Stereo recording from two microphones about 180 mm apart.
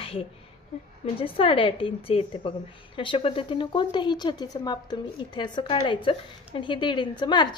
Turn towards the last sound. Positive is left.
turn(degrees=25)  # may be behind; listen again after turning